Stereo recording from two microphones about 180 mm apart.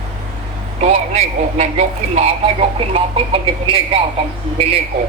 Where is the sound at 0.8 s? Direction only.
40° right (ahead or behind).